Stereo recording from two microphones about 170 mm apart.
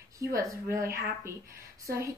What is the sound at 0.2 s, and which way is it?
A child's voice, 20° right (ahead or behind).